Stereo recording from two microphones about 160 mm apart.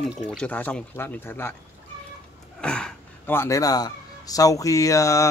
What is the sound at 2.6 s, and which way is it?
Speech, 5° left (ahead or behind).